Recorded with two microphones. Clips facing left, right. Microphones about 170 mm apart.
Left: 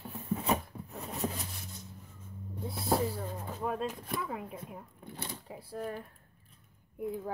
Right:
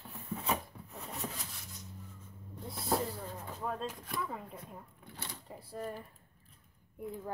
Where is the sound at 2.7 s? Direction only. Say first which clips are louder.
Left 3 dB; 10° left (ahead or behind).